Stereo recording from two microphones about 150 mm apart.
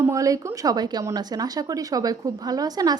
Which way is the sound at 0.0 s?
20° right (ahead or behind).